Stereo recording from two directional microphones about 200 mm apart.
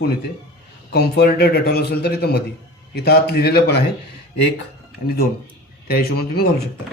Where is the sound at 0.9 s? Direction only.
55° left (ahead or behind).